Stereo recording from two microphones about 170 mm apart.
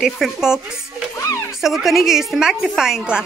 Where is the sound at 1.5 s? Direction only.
Centre (ahead or behind).